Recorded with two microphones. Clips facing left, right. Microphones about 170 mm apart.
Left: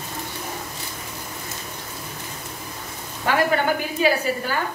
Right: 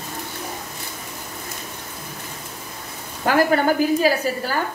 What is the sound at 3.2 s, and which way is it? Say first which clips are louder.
A woman's voice: right 3 dB; 40° right (ahead or behind).